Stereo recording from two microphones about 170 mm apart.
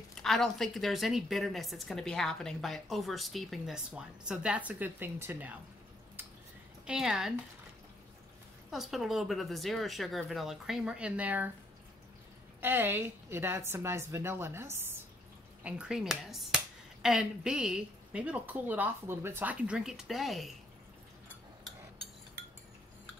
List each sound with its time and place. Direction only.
0.1 s a woman's voice: centre (ahead or behind)
6.9 s a woman's voice: 5° right (ahead or behind)
8.6 s a woman's voice: centre (ahead or behind)
12.5 s a woman's voice: 10° right (ahead or behind)